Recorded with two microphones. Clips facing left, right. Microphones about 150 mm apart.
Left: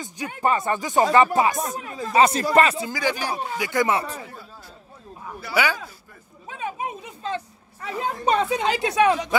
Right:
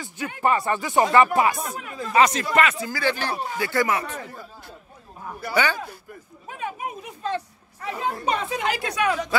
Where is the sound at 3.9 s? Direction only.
30° left (ahead or behind).